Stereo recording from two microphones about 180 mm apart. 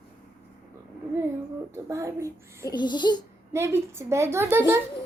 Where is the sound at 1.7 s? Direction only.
15° right (ahead or behind).